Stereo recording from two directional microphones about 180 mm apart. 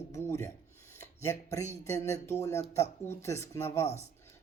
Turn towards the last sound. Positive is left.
turn(degrees=15)  # may be behind; listen again after turning